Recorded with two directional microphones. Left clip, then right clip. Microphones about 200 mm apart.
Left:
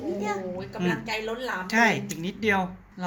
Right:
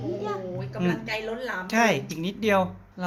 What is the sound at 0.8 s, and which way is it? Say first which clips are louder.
A woman's voice: even; 30° right (ahead or behind).